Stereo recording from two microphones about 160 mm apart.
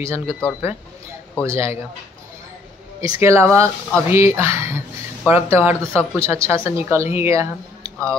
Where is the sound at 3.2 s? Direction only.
20° right (ahead or behind).